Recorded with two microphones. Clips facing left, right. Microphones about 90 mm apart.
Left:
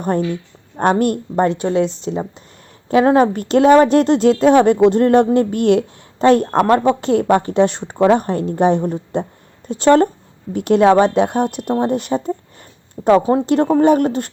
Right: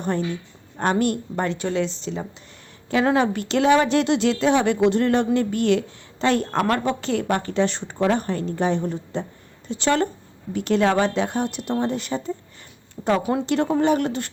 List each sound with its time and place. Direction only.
0.0 s a woman's voice: 50° left (ahead or behind)
13.0 s speech: 20° left (ahead or behind)
13.4 s a woman's voice: 45° left (ahead or behind)